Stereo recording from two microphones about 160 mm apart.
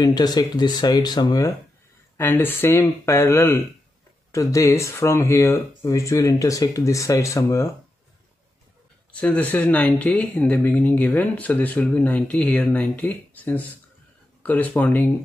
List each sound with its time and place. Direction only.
0.0 s speech: 25° left (ahead or behind)
2.1 s speech: 15° left (ahead or behind)
9.1 s speech: 10° left (ahead or behind)